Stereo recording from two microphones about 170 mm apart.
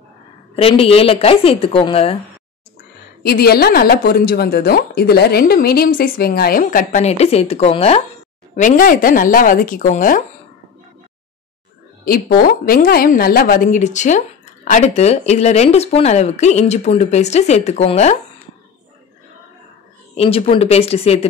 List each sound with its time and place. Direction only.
0.6 s a woman's voice: 35° left (ahead or behind)
3.2 s a woman's voice: 65° left (ahead or behind); by 8.0 s 35° left (ahead or behind)
8.5 s a woman's voice: 50° left (ahead or behind)
12.0 s a woman's voice: 60° left (ahead or behind); by 18.1 s 40° left (ahead or behind)
20.2 s a woman's voice: 35° left (ahead or behind)